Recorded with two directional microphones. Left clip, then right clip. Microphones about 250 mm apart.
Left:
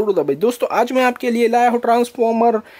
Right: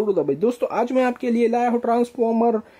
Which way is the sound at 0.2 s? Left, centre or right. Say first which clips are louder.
Left 4 dB; centre.